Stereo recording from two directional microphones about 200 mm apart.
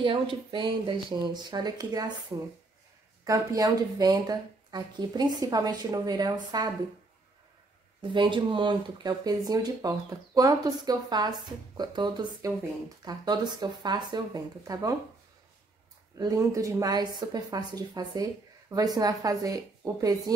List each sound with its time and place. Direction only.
0.0 s speech: 25° right (ahead or behind)
3.3 s speech: 15° right (ahead or behind)
8.0 s speech: 25° right (ahead or behind)
16.2 s speech: 15° right (ahead or behind)